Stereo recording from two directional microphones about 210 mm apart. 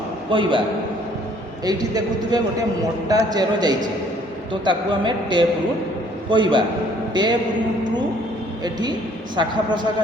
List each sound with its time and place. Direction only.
0.3 s a man's voice: 25° right (ahead or behind)
1.6 s a man's voice: 20° right (ahead or behind)
8.6 s a man's voice: 20° right (ahead or behind)